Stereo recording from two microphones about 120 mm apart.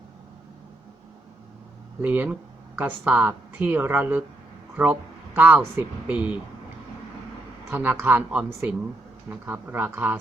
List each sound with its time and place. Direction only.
2.0 s speech: 15° right (ahead or behind)
7.7 s speech: 15° right (ahead or behind)